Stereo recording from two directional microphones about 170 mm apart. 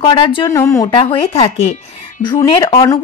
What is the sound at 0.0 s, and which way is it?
Speech, 30° left (ahead or behind).